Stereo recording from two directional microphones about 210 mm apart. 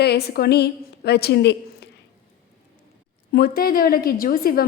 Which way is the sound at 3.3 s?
45° left (ahead or behind).